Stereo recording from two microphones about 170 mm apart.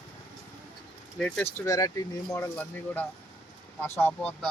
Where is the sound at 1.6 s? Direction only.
20° left (ahead or behind).